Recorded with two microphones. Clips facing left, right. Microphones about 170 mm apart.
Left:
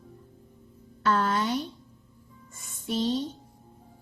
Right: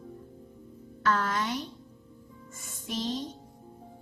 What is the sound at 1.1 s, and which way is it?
Speech, 30° left (ahead or behind).